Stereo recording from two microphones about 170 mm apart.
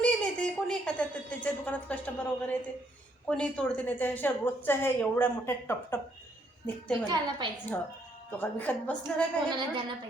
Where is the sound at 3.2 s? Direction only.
5° left (ahead or behind).